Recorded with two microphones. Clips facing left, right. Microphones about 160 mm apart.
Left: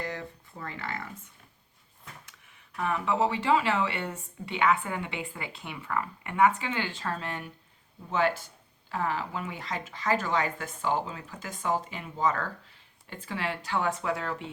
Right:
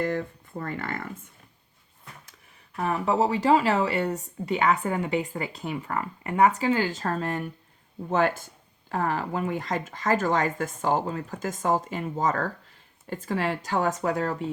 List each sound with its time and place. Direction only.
0.0 s speech: 50° right (ahead or behind)
2.7 s speech: 35° right (ahead or behind)